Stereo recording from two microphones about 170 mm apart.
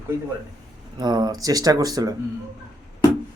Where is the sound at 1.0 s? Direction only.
25° right (ahead or behind).